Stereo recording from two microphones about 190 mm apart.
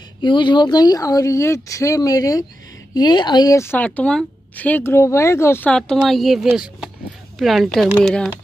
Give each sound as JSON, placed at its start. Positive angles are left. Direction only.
{"t": 0.2, "sound": "a woman's voice", "side_deg": 25}